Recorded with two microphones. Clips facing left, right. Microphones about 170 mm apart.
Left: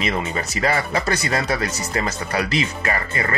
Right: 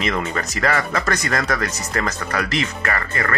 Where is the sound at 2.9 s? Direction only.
20° left (ahead or behind).